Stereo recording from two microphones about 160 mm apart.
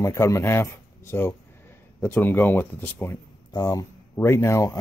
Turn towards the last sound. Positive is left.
turn(degrees=20)  # may be behind; listen again after turning